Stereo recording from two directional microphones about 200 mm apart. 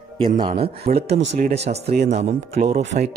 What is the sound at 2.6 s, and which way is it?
Speech, 50° right (ahead or behind).